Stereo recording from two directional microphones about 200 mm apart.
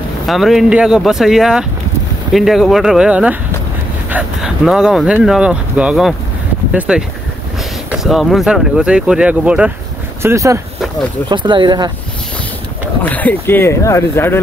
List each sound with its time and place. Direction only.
0.3 s speech: centre (ahead or behind); by 11.9 s 20° right (ahead or behind)
13.0 s speech: 10° left (ahead or behind)